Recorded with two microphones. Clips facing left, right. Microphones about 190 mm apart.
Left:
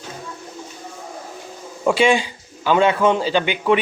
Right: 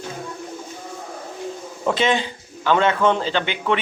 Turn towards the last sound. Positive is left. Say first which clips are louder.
# left 4 dB
turn(degrees=15)  # may be behind; listen again after turning